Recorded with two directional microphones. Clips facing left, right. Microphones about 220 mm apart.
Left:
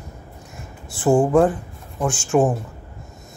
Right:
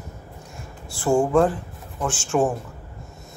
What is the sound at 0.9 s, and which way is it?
Speech, 20° left (ahead or behind).